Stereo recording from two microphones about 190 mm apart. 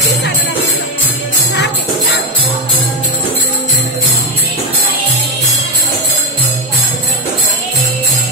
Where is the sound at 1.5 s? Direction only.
60° left (ahead or behind).